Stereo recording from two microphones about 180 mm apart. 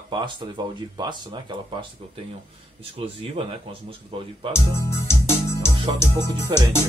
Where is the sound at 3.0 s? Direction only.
30° right (ahead or behind).